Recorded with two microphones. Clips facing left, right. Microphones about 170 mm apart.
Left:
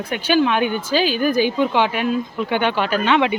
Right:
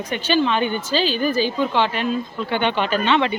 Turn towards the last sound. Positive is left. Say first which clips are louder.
# left 1 dB
turn(degrees=10)  # may be behind; listen again after turning